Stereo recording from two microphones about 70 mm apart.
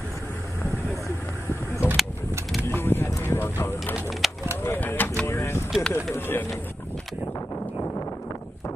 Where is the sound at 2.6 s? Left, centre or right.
Left.